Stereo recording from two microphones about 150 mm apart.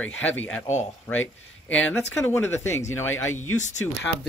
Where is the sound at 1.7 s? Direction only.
10° left (ahead or behind).